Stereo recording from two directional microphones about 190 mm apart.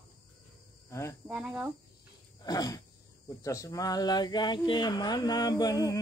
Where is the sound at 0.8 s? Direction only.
15° left (ahead or behind).